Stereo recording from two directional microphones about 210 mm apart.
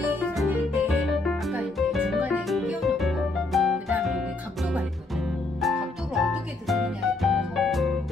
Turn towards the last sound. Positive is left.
turn(degrees=0)  # may be behind; listen again after turning